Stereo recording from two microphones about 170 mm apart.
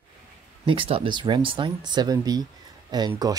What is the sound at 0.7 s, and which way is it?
Speech, 30° right (ahead or behind).